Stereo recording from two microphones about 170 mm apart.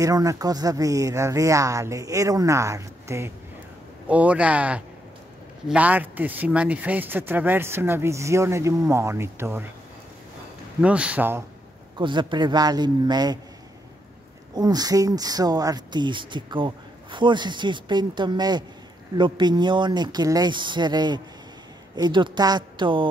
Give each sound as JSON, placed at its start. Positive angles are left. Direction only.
{"t": 0.0, "sound": "speech", "side_deg": -20}
{"t": 10.8, "sound": "speech", "side_deg": -5}
{"t": 12.0, "sound": "speech", "side_deg": -30}
{"t": 14.5, "sound": "speech", "side_deg": -25}